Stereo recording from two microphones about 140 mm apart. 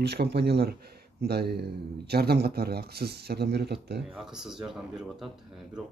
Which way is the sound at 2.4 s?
90° right.